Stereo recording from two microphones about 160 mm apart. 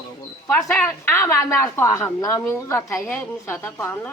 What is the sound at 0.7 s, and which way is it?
A woman's voice, 10° left (ahead or behind).